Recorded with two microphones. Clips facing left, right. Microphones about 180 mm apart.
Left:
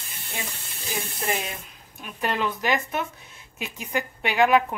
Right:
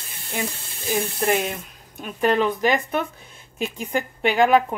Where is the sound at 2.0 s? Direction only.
45° right (ahead or behind).